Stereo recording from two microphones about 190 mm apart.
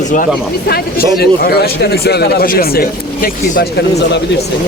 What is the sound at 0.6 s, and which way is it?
A man's voice, 55° left (ahead or behind).